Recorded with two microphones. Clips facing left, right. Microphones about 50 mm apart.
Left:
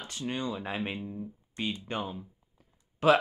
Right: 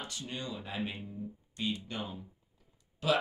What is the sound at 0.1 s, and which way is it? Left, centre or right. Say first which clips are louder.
Speech: left 7 dB; left.